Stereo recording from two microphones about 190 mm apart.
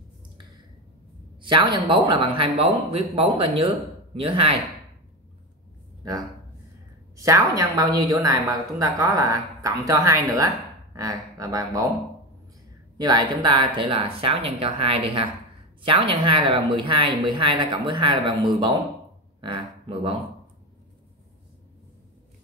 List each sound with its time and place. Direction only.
1.4 s a woman's voice: 25° right (ahead or behind)
7.2 s a woman's voice: 15° right (ahead or behind)
12.9 s a woman's voice: 20° right (ahead or behind)
19.4 s a sound: 25° right (ahead or behind)